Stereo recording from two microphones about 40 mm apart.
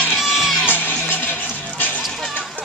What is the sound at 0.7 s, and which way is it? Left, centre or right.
Music, left.